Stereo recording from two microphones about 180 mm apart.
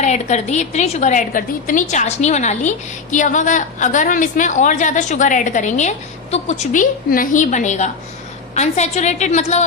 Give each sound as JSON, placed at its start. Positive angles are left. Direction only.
{"t": 0.0, "sound": "a woman's voice", "side_deg": 40}